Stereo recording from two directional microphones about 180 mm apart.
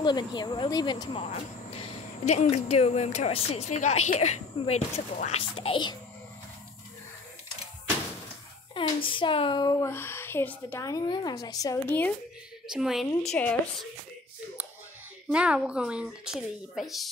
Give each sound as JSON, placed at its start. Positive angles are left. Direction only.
{"t": 0.0, "sound": "speech", "side_deg": 25}
{"t": 1.2, "sound": "speech", "side_deg": 35}
{"t": 8.7, "sound": "speech", "side_deg": 30}
{"t": 12.7, "sound": "speech", "side_deg": 0}
{"t": 15.2, "sound": "speech", "side_deg": -5}